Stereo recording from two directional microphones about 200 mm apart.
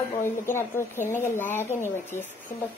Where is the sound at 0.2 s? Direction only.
15° left (ahead or behind).